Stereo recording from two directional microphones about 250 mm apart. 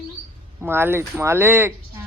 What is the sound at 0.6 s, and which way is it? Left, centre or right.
Speech, centre.